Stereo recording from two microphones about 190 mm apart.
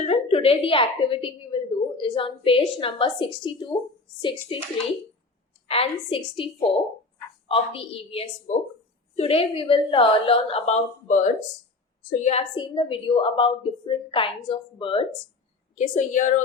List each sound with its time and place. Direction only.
0.1 s a woman's voice: 30° left (ahead or behind)
5.6 s a woman's voice: 30° left (ahead or behind)
15.7 s a woman's voice: 40° left (ahead or behind)